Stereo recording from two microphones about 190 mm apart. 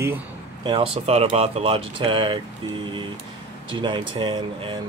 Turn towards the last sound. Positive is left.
turn(degrees=-25)  # may be behind; listen again after turning